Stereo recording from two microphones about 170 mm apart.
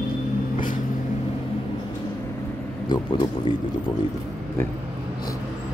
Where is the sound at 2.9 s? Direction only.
25° left (ahead or behind).